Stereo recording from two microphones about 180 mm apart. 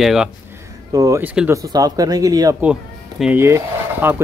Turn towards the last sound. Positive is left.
turn(degrees=-15)  # may be behind; listen again after turning